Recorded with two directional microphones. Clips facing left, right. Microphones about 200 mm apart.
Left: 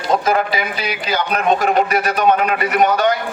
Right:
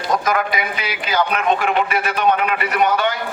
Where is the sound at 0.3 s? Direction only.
30° left (ahead or behind).